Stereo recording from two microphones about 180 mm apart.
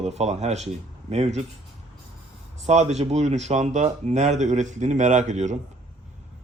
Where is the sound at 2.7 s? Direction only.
35° right (ahead or behind).